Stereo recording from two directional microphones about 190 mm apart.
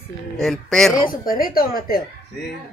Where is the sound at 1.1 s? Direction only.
50° left (ahead or behind).